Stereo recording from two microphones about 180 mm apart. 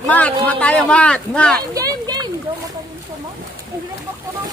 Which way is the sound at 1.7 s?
20° right (ahead or behind).